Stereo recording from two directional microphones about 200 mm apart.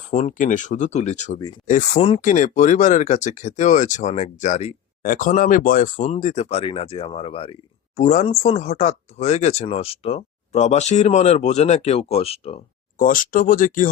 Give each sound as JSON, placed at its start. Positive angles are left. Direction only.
{"t": 0.1, "sound": "speech", "side_deg": 35}
{"t": 13.0, "sound": "speech", "side_deg": 40}